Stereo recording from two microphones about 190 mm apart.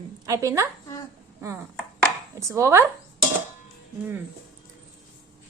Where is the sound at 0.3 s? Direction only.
15° right (ahead or behind).